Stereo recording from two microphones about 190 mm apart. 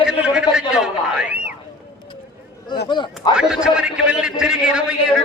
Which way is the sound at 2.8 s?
25° left (ahead or behind).